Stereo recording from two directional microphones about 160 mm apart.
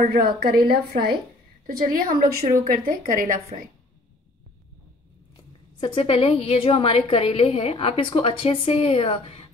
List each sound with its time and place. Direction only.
0.0 s a woman's voice: 70° right (ahead or behind)
5.8 s a woman's voice: 35° left (ahead or behind)